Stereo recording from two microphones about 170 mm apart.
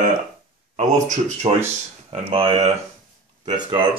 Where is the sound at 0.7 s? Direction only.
45° right (ahead or behind).